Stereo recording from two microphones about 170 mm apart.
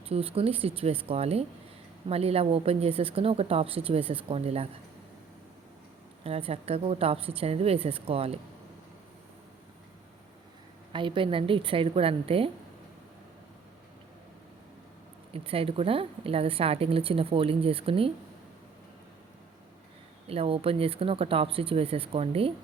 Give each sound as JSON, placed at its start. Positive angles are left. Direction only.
{"t": 0.1, "sound": "speech", "side_deg": -35}
{"t": 6.2, "sound": "speech", "side_deg": -35}
{"t": 10.9, "sound": "speech", "side_deg": -30}
{"t": 15.3, "sound": "speech", "side_deg": -35}
{"t": 20.2, "sound": "speech", "side_deg": -35}